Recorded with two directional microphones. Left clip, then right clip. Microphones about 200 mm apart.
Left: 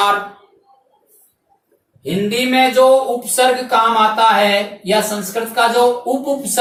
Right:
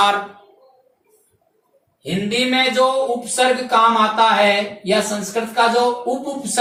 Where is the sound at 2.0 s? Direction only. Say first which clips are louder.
Left 2 dB; 10° left (ahead or behind).